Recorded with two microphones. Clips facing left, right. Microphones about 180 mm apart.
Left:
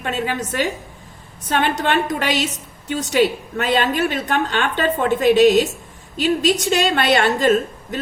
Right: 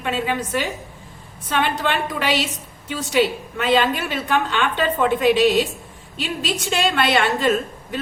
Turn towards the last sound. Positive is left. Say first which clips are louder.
# left 4 dB
turn(degrees=40)  # may be behind; listen again after turning